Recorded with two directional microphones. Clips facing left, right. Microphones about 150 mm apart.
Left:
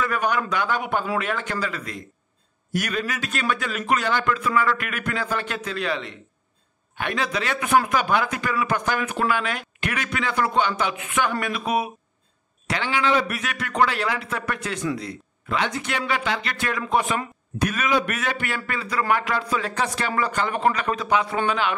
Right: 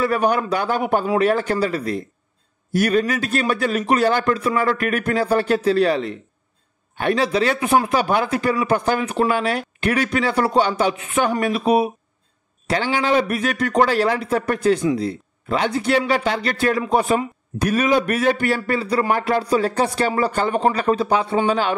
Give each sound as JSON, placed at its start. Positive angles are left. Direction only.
{"t": 0.0, "sound": "a man's voice", "side_deg": -35}